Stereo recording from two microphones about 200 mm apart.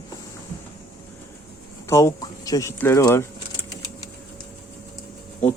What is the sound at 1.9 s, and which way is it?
Speech, 15° left (ahead or behind).